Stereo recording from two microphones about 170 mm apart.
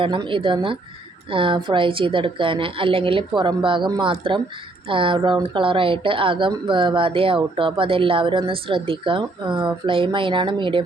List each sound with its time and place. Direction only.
0.0 s speech: 30° right (ahead or behind)